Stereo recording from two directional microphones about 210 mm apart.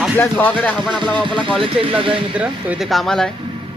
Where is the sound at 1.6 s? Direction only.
25° right (ahead or behind).